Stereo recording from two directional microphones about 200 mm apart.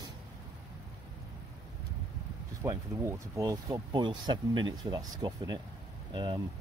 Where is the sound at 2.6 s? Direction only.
15° right (ahead or behind).